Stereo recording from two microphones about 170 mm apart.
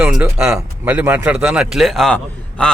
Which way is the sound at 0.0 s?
10° right (ahead or behind).